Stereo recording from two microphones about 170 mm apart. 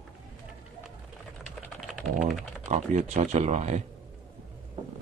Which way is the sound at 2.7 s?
45° right (ahead or behind).